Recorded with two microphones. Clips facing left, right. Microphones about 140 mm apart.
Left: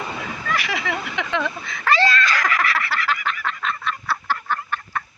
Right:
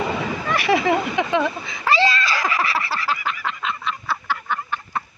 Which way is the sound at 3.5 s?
10° right (ahead or behind).